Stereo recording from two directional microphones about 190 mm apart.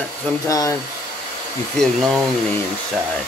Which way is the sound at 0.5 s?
20° left (ahead or behind).